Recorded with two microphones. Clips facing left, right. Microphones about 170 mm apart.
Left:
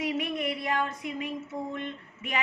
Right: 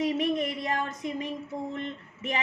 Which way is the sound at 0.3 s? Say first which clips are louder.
Even; 40° right (ahead or behind).